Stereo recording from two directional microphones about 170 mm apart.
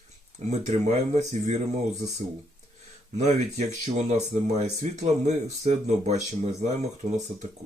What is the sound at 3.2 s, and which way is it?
Speech, 40° right (ahead or behind).